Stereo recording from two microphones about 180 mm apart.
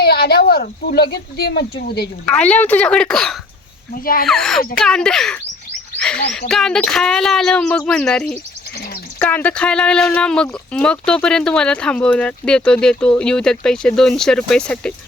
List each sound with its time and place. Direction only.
0.0 s speech: 60° left (ahead or behind)
2.2 s speech: 5° left (ahead or behind)
3.9 s speech: 55° left (ahead or behind)
4.3 s speech: centre (ahead or behind)